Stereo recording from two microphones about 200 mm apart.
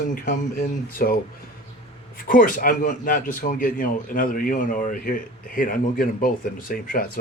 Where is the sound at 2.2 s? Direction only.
45° left (ahead or behind).